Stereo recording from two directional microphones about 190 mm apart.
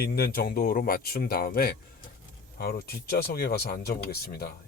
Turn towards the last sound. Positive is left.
turn(degrees=55)  # may be behind; listen again after turning